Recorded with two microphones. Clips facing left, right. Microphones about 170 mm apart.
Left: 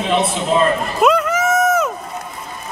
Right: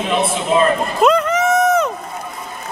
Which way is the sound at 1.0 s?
Centre (ahead or behind).